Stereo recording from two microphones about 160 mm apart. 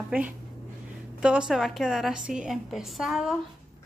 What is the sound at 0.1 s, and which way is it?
A woman's voice, 10° right (ahead or behind).